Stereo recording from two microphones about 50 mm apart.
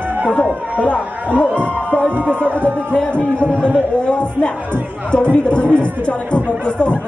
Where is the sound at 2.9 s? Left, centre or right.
Left.